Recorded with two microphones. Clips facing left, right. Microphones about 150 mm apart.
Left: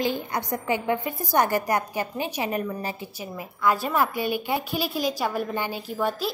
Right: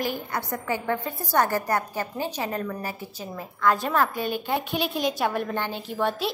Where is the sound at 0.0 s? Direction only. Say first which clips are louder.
Left 2 dB; 20° left (ahead or behind).